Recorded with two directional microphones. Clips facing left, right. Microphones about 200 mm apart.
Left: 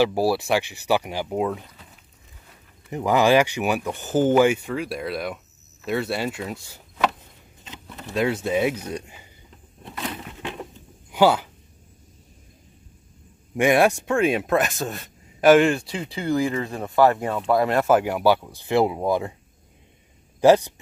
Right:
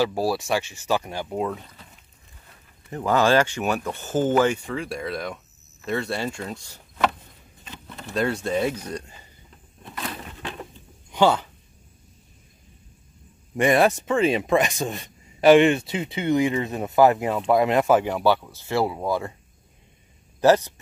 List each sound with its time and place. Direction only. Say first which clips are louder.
0.0 s speech: left 3 dB; 10° left (ahead or behind)
2.9 s speech: left 2 dB; 15° left (ahead or behind)
9.9 s a sound: left 2 dB; 10° left (ahead or behind)
13.6 s speech: left 1 dB; centre (ahead or behind)
16.5 s speech: right 1 dB; 20° right (ahead or behind)
17.2 s speech: right 1 dB; 5° right (ahead or behind); by 19.3 s 20° left (ahead or behind)
20.3 s speech: left 2 dB; 15° left (ahead or behind)